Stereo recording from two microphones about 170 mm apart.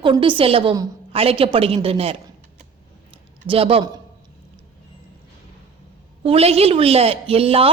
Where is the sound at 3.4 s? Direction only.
35° right (ahead or behind).